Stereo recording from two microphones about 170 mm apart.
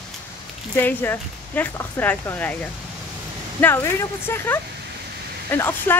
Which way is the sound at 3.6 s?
10° left (ahead or behind).